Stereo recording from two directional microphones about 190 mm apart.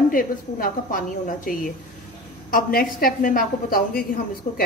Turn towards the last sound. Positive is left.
turn(degrees=50)  # may be behind; listen again after turning